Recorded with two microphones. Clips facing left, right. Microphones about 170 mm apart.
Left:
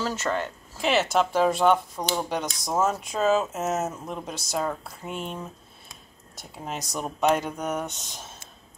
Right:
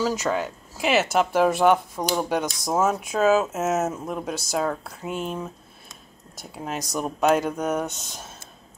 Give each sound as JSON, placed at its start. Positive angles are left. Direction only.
{"t": 0.0, "sound": "speech", "side_deg": -10}